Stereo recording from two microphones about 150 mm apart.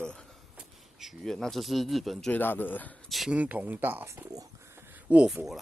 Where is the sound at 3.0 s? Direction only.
Centre (ahead or behind).